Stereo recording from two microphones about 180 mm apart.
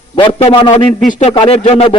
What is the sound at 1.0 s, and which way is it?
Speech, 45° left (ahead or behind).